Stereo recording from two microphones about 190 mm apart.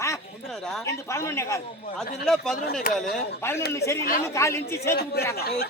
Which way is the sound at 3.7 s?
15° left (ahead or behind).